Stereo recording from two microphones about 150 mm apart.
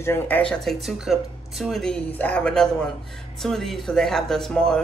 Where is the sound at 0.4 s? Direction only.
5° left (ahead or behind).